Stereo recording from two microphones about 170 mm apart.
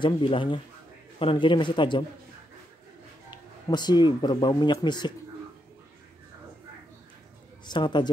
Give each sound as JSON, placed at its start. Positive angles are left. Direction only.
{"t": 0.0, "sound": "speech", "side_deg": 30}
{"t": 3.3, "sound": "speech", "side_deg": 25}
{"t": 7.6, "sound": "speech", "side_deg": 25}